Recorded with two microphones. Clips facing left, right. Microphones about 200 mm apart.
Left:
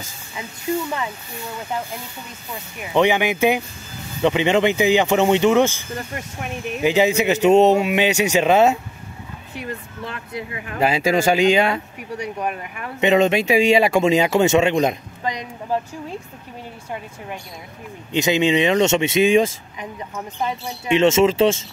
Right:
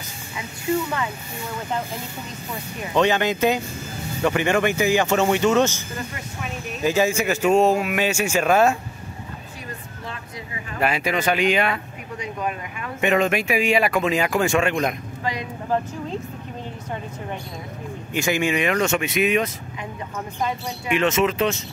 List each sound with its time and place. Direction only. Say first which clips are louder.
2.8 s speech: left 2 dB; 15° left (ahead or behind)
9.6 s speech: left 11 dB; 65° left (ahead or behind)
10.8 s speech: left 5 dB; 25° left (ahead or behind)
13.0 s speech: left 4 dB; 25° left (ahead or behind)
18.1 s speech: left 5 dB; 20° left (ahead or behind)